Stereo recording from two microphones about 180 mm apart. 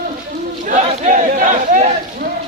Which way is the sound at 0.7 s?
45° right (ahead or behind).